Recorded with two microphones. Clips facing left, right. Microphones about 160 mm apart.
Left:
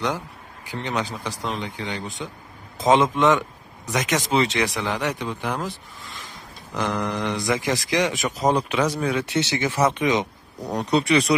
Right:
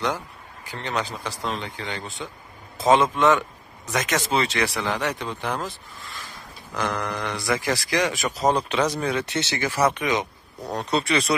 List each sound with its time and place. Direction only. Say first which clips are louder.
0.7 s speech: left 1 dB; 15° left (ahead or behind)